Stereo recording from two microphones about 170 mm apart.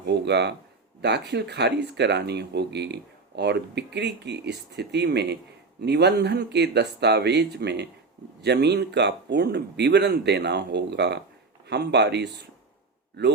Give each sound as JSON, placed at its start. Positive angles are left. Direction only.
{"t": 0.0, "sound": "speech", "side_deg": -85}